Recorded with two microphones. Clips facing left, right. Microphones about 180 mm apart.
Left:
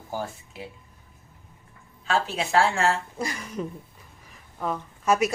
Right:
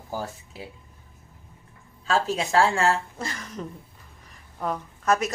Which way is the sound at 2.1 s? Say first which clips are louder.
Right 1 dB; 35° right (ahead or behind).